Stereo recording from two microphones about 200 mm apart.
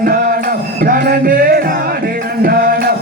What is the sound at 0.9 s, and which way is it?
Speech, 45° right (ahead or behind).